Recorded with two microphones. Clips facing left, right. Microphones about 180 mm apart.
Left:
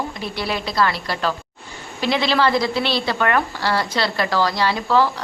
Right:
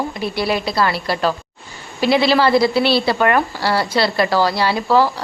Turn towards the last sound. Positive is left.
turn(degrees=-10)  # may be behind; listen again after turning